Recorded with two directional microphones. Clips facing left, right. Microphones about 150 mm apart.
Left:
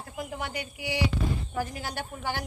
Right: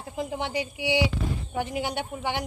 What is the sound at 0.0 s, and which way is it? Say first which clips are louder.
Speech: right 5 dB; 25° right (ahead or behind).